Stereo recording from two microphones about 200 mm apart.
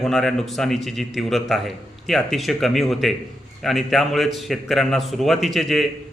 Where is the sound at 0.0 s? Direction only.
Centre (ahead or behind).